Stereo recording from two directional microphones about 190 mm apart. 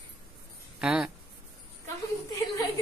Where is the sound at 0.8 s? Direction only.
5° right (ahead or behind).